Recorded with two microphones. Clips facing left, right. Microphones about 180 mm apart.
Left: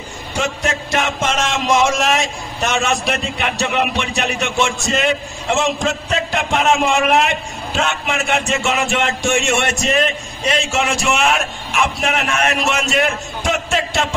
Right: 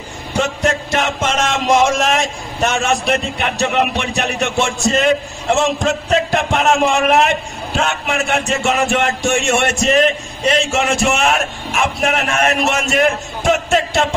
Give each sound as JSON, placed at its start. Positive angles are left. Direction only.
{"t": 0.4, "sound": "speech", "side_deg": -50}
{"t": 6.0, "sound": "speech", "side_deg": -45}
{"t": 9.6, "sound": "speech", "side_deg": -55}